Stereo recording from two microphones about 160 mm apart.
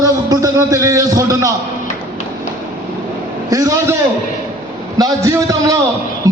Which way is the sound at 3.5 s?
20° right (ahead or behind).